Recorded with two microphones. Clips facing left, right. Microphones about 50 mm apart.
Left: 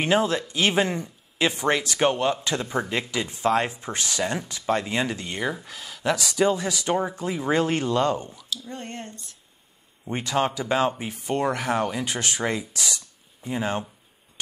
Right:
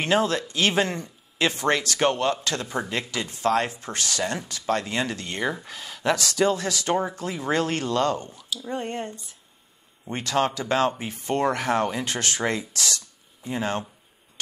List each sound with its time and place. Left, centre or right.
0.0 s speech: centre
5.3 s speech: centre
6.1 s speech: centre
8.6 s speech: centre
10.0 s speech: centre